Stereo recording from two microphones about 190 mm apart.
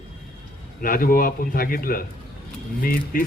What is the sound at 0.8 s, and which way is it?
A man's voice, 50° left (ahead or behind).